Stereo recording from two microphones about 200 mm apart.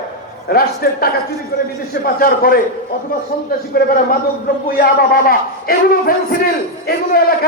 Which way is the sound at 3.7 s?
50° left (ahead or behind).